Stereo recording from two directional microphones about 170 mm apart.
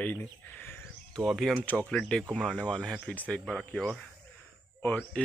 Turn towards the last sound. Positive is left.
turn(degrees=10)  # may be behind; listen again after turning